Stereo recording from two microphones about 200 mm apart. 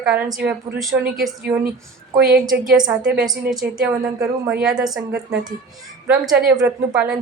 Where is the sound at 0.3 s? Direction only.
Centre (ahead or behind).